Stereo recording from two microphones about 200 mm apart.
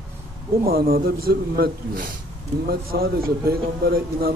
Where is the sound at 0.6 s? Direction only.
50° right (ahead or behind).